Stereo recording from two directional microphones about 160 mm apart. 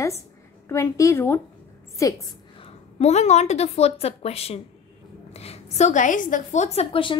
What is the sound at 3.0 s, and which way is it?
A woman's voice, 45° left (ahead or behind).